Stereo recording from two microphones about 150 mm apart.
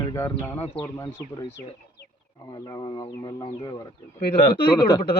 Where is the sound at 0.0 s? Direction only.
20° left (ahead or behind).